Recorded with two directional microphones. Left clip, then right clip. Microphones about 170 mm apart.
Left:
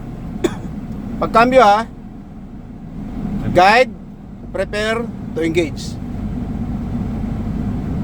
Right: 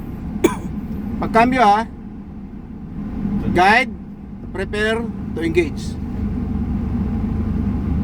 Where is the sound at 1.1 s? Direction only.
35° left (ahead or behind).